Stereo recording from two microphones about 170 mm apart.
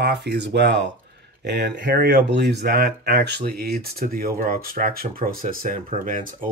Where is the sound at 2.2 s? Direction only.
85° right.